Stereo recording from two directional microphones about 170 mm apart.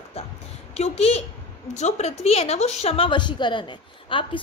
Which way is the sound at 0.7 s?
40° left (ahead or behind).